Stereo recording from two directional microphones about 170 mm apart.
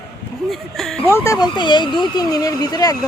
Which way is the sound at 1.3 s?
25° left (ahead or behind).